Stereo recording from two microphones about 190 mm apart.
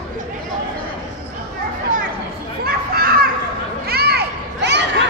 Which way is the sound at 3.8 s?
55° right (ahead or behind).